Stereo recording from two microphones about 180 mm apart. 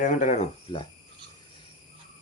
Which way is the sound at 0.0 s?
45° left (ahead or behind).